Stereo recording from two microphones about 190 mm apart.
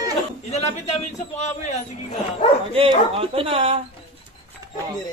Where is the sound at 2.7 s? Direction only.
30° right (ahead or behind).